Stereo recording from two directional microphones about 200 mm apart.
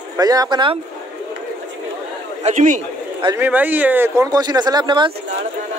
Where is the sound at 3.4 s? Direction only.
10° right (ahead or behind).